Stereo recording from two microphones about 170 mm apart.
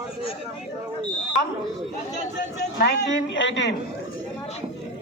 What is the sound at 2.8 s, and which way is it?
Speech, 80° left.